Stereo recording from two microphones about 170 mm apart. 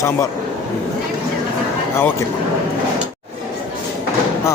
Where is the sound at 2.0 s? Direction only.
15° left (ahead or behind).